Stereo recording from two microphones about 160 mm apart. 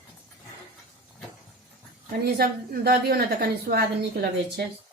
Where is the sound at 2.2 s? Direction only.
75° right (ahead or behind).